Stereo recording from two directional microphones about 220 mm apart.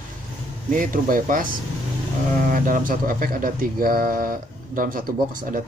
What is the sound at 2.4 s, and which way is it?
Speech, 40° right (ahead or behind).